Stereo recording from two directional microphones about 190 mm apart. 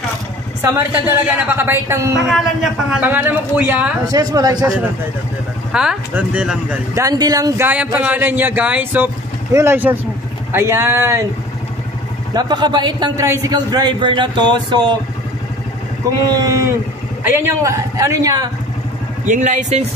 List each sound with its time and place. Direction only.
0.6 s speech: 15° right (ahead or behind)
2.2 s a man's voice: centre (ahead or behind); by 4.6 s 20° right (ahead or behind)
5.7 s speech: 5° right (ahead or behind)
7.0 s speech: 20° right (ahead or behind)
12.4 s a man's voice: 20° right (ahead or behind)
16.3 s a man's voice: 20° right (ahead or behind)
19.2 s a man's voice: 40° right (ahead or behind)